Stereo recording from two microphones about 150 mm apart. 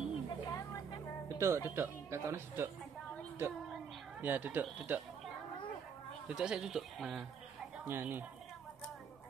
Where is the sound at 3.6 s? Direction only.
Centre (ahead or behind).